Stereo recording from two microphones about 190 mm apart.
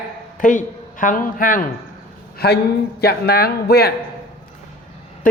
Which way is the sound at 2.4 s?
55° left (ahead or behind).